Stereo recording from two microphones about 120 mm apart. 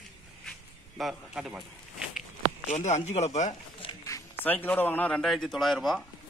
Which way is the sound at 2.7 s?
75° left (ahead or behind).